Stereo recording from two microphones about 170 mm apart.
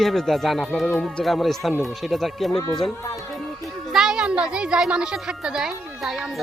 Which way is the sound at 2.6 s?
20° left (ahead or behind).